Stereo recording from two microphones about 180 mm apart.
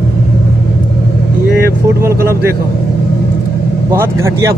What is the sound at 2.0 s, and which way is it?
Speech, 15° right (ahead or behind).